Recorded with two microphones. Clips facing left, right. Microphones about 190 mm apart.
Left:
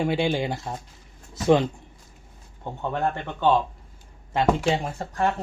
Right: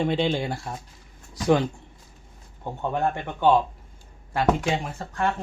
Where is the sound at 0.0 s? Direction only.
10° left (ahead or behind).